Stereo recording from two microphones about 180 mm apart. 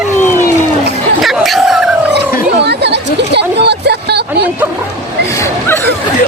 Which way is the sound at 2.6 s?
70° right (ahead or behind).